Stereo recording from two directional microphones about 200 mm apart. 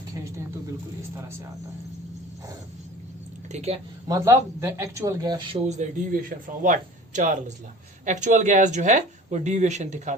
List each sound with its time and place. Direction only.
0.1 s speech: 15° right (ahead or behind)
3.5 s speech: 30° right (ahead or behind)
4.1 s speech: 15° right (ahead or behind); by 10.2 s 35° right (ahead or behind)